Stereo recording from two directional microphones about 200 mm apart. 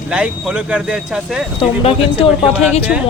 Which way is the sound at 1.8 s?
30° left (ahead or behind).